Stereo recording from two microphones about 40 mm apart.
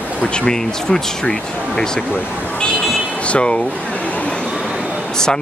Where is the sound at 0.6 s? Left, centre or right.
Centre.